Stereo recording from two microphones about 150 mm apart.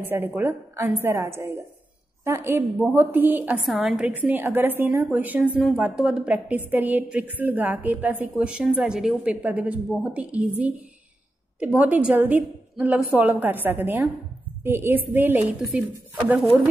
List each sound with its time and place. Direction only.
0.0 s a woman's voice: 15° right (ahead or behind)